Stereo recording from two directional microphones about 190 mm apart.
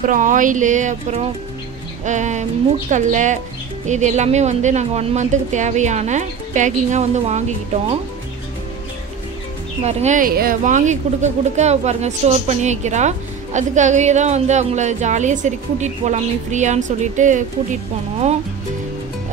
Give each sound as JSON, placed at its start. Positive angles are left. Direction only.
{"t": 0.0, "sound": "a woman's voice", "side_deg": -45}
{"t": 9.8, "sound": "a woman's voice", "side_deg": -35}